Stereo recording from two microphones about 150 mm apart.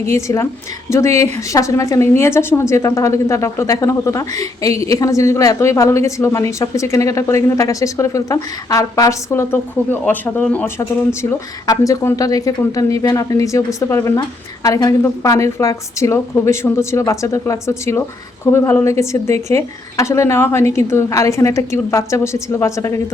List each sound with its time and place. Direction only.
0.0 s a woman's voice: 20° left (ahead or behind)